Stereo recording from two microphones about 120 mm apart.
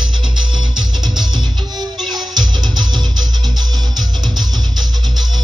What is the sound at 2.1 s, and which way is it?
Music, 35° right (ahead or behind).